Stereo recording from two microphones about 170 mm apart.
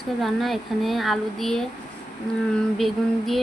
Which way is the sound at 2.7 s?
Centre (ahead or behind).